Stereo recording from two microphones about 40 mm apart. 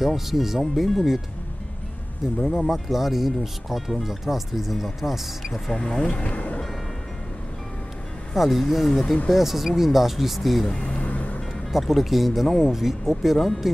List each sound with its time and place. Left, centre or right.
0.0 s speech: centre
2.2 s speech: centre
5.7 s speech: centre
6.0 s speech: left
6.3 s music: left
8.4 s speech: centre
10.7 s speech: centre
11.0 s vehicle: left
11.7 s speech: centre